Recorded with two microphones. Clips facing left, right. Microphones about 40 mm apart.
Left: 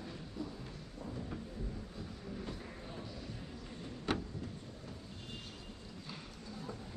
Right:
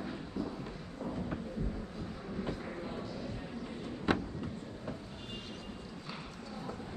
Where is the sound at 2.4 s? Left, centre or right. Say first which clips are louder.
Right 7 dB; right.